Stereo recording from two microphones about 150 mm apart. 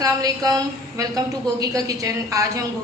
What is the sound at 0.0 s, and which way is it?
A woman's voice, 25° right (ahead or behind).